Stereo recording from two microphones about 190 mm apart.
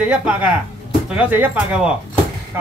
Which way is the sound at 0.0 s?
5° right (ahead or behind).